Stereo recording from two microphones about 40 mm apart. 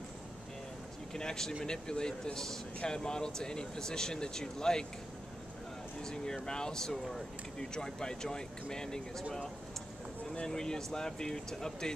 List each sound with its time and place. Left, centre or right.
1.1 s speech: centre
6.0 s speech: centre
10.3 s speech: centre